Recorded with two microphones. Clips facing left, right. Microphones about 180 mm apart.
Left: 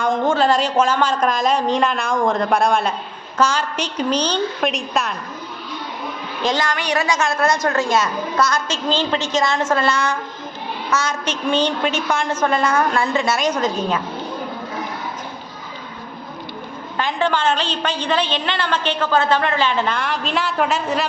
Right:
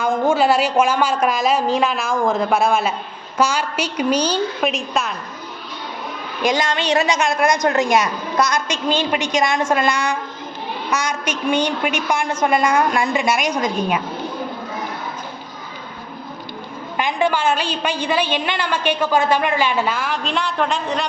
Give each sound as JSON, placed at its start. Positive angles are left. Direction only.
{"t": 0.0, "sound": "a woman's voice", "side_deg": -10}
{"t": 6.4, "sound": "a woman's voice", "side_deg": -15}
{"t": 6.7, "sound": "a woman's voice", "side_deg": -25}
{"t": 17.0, "sound": "a woman's voice", "side_deg": -15}